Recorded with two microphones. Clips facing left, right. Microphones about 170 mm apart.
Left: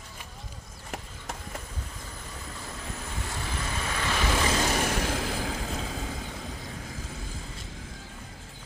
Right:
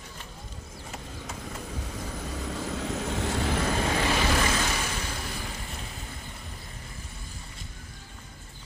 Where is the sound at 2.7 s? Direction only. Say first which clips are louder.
Right 8 dB; 75° right (ahead or behind).